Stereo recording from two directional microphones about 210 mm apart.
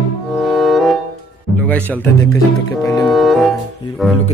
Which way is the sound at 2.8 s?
15° left (ahead or behind).